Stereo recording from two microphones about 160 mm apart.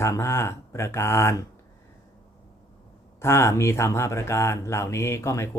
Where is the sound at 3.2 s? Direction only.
15° left (ahead or behind).